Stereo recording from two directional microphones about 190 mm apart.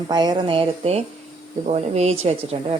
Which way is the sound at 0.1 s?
20° right (ahead or behind).